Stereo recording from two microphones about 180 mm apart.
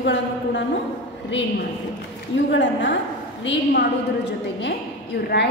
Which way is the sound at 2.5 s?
90° left.